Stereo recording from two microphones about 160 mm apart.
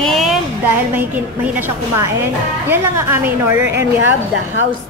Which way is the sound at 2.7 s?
15° right (ahead or behind).